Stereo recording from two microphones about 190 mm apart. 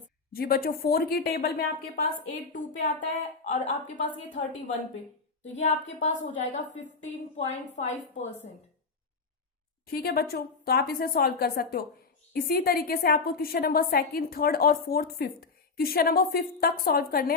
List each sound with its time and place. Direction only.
0.3 s a woman's voice: 55° left (ahead or behind)
5.5 s a woman's voice: 40° left (ahead or behind)
9.8 s a woman's voice: 55° left (ahead or behind)